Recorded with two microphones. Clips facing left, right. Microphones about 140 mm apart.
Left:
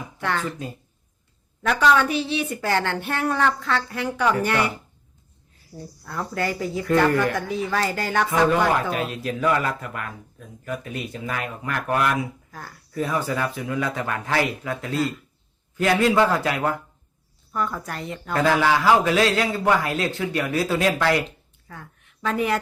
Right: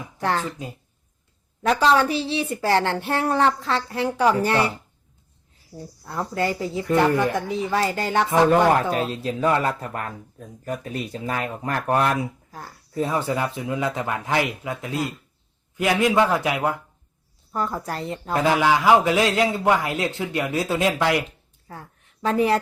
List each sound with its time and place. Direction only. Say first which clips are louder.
0.2 s speech: right 3 dB; 35° right (ahead or behind)
1.6 s speech: right 1 dB; 30° right (ahead or behind)
6.1 s speech: right 2 dB; 25° right (ahead or behind)
8.4 s a man's voice: right 3 dB; 35° right (ahead or behind); by 16.7 s 15° right (ahead or behind)
17.5 s speech: right 1 dB; 30° right (ahead or behind)
18.3 s speech: even; 20° right (ahead or behind)
21.7 s a woman's voice: right 2 dB; 35° right (ahead or behind)